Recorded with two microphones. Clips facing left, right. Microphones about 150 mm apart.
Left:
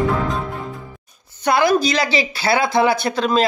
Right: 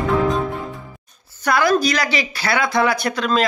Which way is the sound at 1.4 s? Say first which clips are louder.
Left 1 dB; 25° left (ahead or behind).